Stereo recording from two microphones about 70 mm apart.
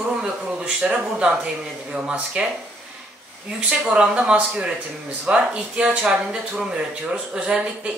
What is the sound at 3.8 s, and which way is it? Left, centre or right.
Speech, centre.